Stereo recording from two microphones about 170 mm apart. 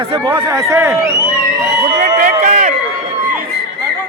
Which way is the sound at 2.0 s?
50° right (ahead or behind).